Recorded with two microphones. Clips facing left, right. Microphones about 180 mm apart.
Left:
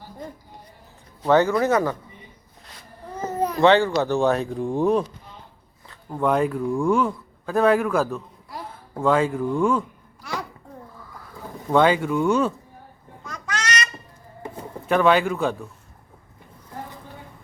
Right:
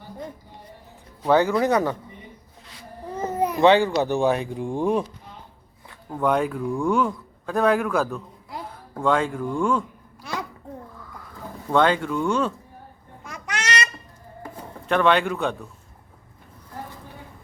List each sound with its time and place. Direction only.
1.2 s speech: 15° right (ahead or behind)
3.4 s speech: 15° right (ahead or behind)
6.1 s a man's voice: centre (ahead or behind)
11.7 s speech: 10° left (ahead or behind)
13.3 s a sound: 25° right (ahead or behind)
14.8 s a man's voice: 5° left (ahead or behind)